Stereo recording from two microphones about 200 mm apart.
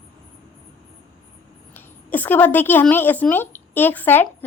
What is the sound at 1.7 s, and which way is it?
A woman's voice, 10° left (ahead or behind).